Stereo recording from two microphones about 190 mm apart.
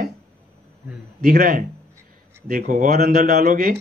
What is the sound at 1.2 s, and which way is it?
A man's voice, 50° right (ahead or behind).